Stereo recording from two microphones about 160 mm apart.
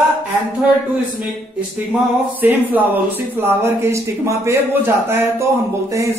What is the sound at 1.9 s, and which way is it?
Speech, 10° right (ahead or behind).